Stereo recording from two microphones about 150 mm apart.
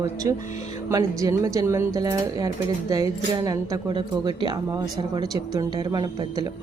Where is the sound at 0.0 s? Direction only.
20° right (ahead or behind).